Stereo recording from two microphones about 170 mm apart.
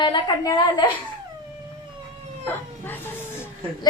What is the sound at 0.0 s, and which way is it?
Speech, 25° left (ahead or behind).